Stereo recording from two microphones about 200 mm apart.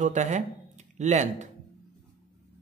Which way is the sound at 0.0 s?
35° right (ahead or behind).